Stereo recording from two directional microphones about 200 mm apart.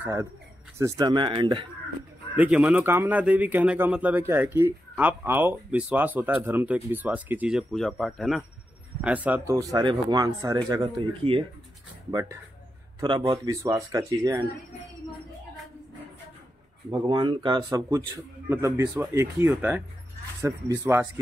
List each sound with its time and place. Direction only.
0.0 s speech: 15° right (ahead or behind)
2.3 s speech: 5° right (ahead or behind)
16.9 s speech: 20° right (ahead or behind)